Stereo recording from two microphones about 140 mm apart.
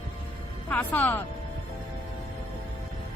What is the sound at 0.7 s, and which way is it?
Speech, 10° left (ahead or behind).